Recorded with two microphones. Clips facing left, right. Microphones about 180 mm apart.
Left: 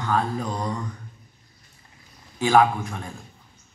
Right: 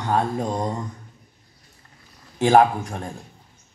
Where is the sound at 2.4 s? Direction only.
45° right (ahead or behind).